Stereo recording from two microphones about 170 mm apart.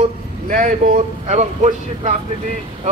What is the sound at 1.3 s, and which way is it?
Speech, 40° right (ahead or behind).